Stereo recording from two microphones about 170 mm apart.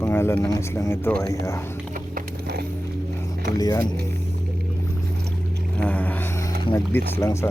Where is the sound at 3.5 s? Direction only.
20° left (ahead or behind).